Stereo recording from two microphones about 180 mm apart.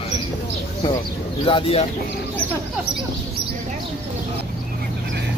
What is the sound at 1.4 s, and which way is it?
Speech, 30° left (ahead or behind).